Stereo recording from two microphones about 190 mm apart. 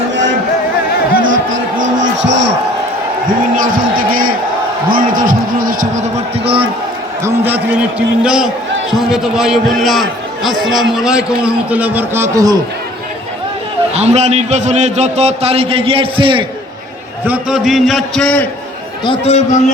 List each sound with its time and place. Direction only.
1.2 s a sound: 90° right
3.5 s speech: 45° right (ahead or behind); by 6.7 s 30° right (ahead or behind)
7.3 s a man's voice: 10° right (ahead or behind)
13.9 s a man's voice: 35° right (ahead or behind)
17.2 s a man's voice: 5° right (ahead or behind)
19.0 s a man's voice: 30° left (ahead or behind)